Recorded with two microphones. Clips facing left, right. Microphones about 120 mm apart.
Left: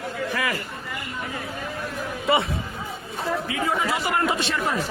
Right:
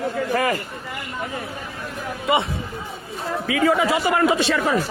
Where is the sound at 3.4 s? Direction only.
90° right.